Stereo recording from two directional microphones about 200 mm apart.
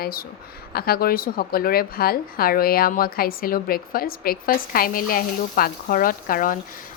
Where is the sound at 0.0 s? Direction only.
50° left (ahead or behind).